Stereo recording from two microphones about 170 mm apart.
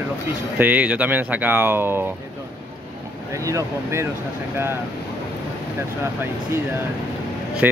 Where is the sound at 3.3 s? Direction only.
20° right (ahead or behind).